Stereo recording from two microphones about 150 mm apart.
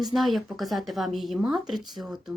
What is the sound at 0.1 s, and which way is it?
Speech, centre (ahead or behind).